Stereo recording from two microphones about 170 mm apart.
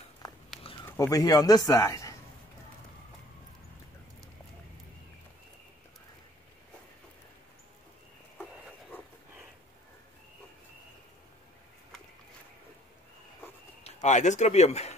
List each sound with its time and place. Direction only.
0.8 s speech: 15° left (ahead or behind)
13.8 s speech: 45° left (ahead or behind)